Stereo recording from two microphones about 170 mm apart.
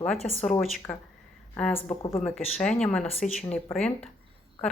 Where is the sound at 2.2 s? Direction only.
Centre (ahead or behind).